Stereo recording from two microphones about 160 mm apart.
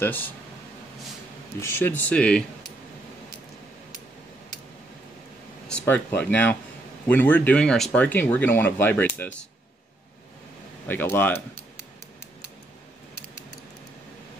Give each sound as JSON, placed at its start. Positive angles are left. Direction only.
{"t": 0.0, "sound": "speech", "side_deg": 10}
{"t": 1.6, "sound": "speech", "side_deg": 15}
{"t": 5.7, "sound": "speech", "side_deg": 10}
{"t": 10.9, "sound": "speech", "side_deg": 15}